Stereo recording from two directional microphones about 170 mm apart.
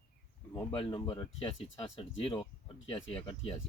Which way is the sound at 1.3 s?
35° left (ahead or behind).